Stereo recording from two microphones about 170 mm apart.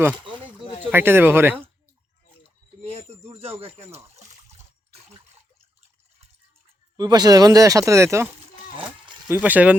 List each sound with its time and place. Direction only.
0.3 s a sound: 30° right (ahead or behind)
0.9 s speech: 15° right (ahead or behind)
3.6 s speech: 35° right (ahead or behind)
6.9 s speech: 25° right (ahead or behind)
9.3 s speech: 10° right (ahead or behind)